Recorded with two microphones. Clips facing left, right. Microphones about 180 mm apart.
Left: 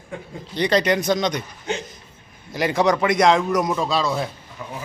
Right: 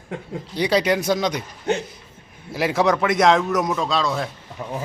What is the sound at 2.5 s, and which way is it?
A man's voice, 5° right (ahead or behind).